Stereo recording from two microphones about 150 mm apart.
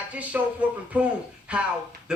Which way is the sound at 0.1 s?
10° right (ahead or behind).